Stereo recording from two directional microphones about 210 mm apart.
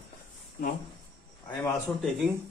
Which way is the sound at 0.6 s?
45° left (ahead or behind).